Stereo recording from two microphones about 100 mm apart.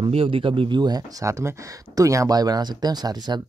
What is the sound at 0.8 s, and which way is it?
Speech, 40° right (ahead or behind).